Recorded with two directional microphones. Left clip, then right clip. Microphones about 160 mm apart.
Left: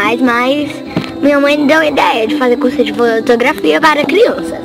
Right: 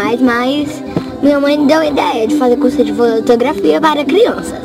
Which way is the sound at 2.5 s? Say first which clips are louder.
Even; 10° left (ahead or behind).